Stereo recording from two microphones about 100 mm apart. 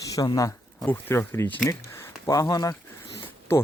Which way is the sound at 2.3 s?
35° left (ahead or behind).